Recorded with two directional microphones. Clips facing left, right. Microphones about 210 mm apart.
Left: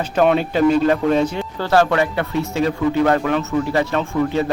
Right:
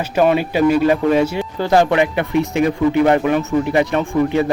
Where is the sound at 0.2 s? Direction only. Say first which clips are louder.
Right 1 dB; 5° right (ahead or behind).